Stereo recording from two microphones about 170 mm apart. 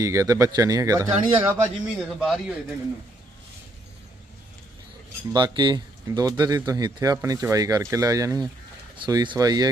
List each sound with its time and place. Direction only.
0.0 s speech: 20° right (ahead or behind)
1.1 s speech: 10° right (ahead or behind)
2.0 s speech: centre (ahead or behind)
5.3 s speech: 25° right (ahead or behind)